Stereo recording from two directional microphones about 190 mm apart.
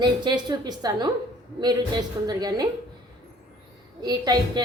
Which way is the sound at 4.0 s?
20° right (ahead or behind).